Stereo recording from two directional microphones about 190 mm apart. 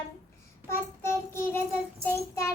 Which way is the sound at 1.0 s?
15° left (ahead or behind).